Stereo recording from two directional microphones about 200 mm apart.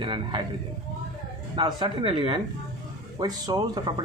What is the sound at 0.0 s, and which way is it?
Speech, 25° right (ahead or behind).